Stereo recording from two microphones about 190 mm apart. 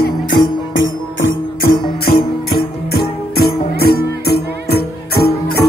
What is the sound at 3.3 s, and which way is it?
Music, 55° left (ahead or behind).